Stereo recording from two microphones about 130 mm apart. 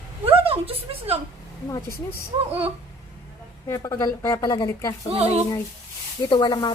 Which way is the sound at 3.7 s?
25° left (ahead or behind).